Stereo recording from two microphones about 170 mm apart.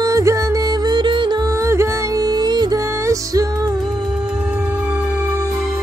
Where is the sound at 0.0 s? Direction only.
20° right (ahead or behind).